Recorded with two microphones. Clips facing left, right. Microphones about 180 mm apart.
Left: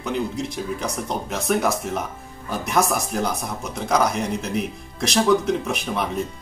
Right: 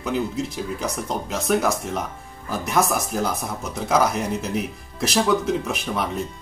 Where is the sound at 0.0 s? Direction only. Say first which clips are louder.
Right 1 dB; centre (ahead or behind).